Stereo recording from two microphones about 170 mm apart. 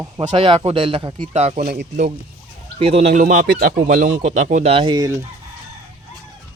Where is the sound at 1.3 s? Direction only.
40° right (ahead or behind).